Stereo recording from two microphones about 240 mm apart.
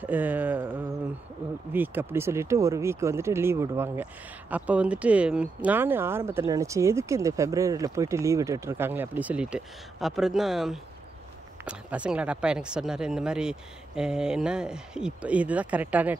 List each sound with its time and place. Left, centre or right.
0.0 s music: centre
1.7 s speech: centre